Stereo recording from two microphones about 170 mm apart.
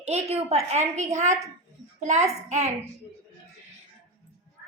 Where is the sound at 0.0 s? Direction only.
40° right (ahead or behind).